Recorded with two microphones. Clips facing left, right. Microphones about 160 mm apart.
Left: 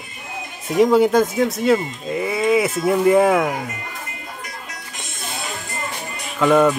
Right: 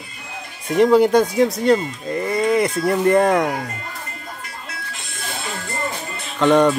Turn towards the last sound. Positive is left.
turn(degrees=5)  # may be behind; listen again after turning